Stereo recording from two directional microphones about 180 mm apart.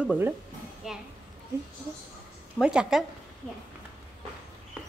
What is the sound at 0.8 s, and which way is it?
Speech, 5° right (ahead or behind).